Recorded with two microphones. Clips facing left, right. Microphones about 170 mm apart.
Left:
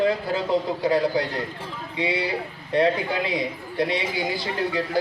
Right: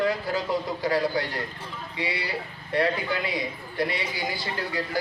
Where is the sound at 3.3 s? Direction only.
25° left (ahead or behind).